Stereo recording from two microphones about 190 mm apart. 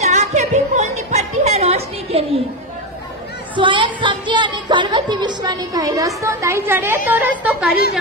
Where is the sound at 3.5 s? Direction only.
25° right (ahead or behind).